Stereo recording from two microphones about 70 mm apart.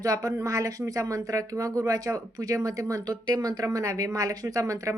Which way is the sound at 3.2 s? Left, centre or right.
Right.